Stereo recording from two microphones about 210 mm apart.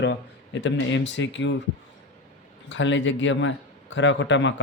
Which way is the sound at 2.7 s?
60° left (ahead or behind).